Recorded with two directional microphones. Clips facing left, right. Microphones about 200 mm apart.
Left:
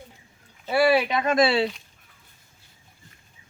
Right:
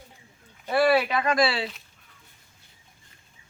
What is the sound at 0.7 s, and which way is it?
Speech, 10° left (ahead or behind).